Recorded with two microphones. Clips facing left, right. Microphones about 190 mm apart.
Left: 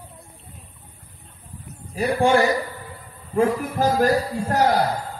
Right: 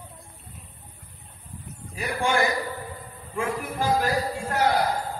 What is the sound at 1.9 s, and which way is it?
A man's voice, 35° left (ahead or behind).